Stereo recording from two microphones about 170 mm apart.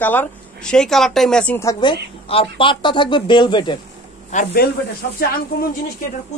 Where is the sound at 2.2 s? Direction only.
35° left (ahead or behind).